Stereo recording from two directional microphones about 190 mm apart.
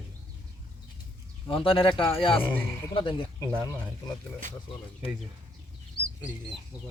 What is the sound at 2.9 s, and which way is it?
Speech, 25° left (ahead or behind).